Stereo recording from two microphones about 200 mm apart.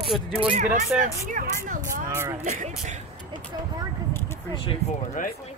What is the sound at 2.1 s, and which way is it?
Speech, 10° right (ahead or behind).